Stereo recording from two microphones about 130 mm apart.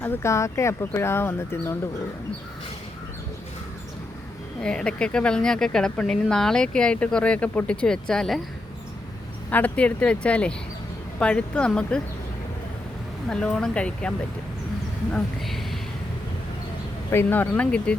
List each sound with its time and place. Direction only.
0.0 s speech: 20° left (ahead or behind)
4.6 s speech: 5° left (ahead or behind)
9.5 s speech: 15° left (ahead or behind)
13.2 s speech: 5° left (ahead or behind)
15.1 s speech: centre (ahead or behind)
17.1 s speech: 15° left (ahead or behind)